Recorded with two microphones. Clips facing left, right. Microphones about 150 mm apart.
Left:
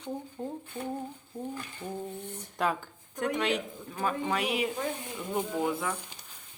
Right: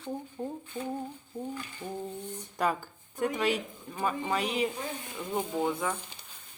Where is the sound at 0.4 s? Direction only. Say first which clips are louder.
Right 1 dB; 5° right (ahead or behind).